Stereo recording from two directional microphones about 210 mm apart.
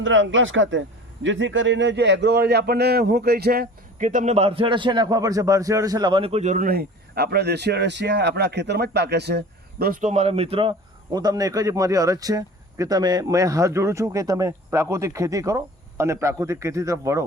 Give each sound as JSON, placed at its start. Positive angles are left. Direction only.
{"t": 0.0, "sound": "speech", "side_deg": -65}